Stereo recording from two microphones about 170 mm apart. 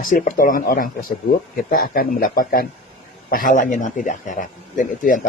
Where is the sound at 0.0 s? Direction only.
55° left (ahead or behind).